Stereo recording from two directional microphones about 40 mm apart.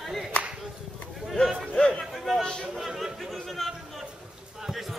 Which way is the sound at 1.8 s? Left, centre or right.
Centre.